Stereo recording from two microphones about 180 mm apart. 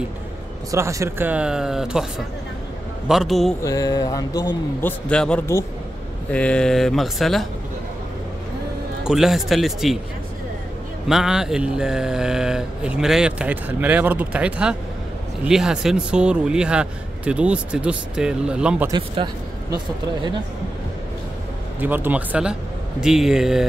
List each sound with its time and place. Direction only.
0.7 s speech: 15° right (ahead or behind); by 3.5 s centre (ahead or behind)
3.6 s speech: 20° left (ahead or behind)
4.8 s speech: 5° left (ahead or behind)
9.0 s speech: centre (ahead or behind)
11.1 s speech: 5° right (ahead or behind)
18.9 s speech: 25° right (ahead or behind)
21.7 s speech: 10° right (ahead or behind)